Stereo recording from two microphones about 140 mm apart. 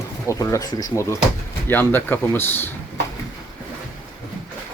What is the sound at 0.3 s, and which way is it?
Speech, 20° left (ahead or behind).